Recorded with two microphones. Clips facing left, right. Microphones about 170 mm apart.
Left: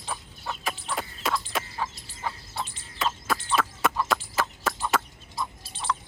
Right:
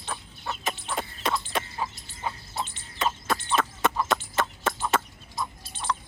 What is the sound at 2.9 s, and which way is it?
Chicken, 5° left (ahead or behind).